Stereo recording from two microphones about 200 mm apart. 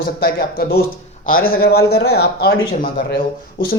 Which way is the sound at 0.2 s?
50° left (ahead or behind).